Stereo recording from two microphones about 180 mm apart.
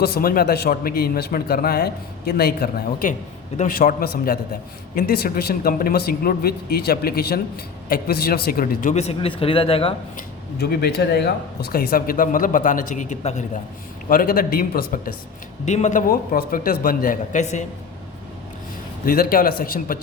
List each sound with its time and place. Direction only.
0.0 s speech: 55° left (ahead or behind); by 9.9 s 30° left (ahead or behind)
10.2 s speech: 60° left (ahead or behind); by 13.4 s 40° left (ahead or behind)
14.1 s speech: 55° left (ahead or behind)
15.6 s speech: 40° left (ahead or behind)
19.0 s speech: 55° left (ahead or behind)